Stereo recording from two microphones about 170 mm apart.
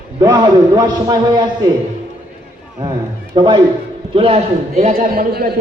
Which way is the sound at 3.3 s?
25° right (ahead or behind).